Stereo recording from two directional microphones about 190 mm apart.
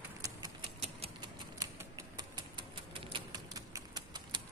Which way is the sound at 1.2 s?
15° right (ahead or behind).